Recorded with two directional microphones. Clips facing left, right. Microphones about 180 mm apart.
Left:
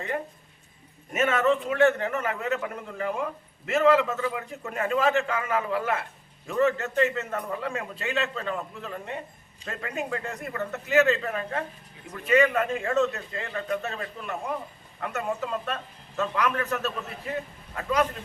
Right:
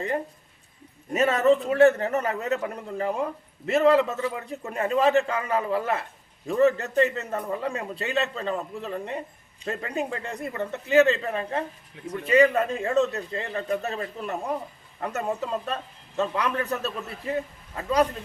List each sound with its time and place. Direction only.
1.1 s a man's voice: 35° right (ahead or behind)